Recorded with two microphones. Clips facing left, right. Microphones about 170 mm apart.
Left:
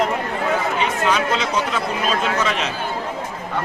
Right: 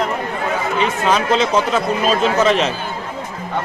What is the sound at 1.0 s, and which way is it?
Speech, 35° right (ahead or behind).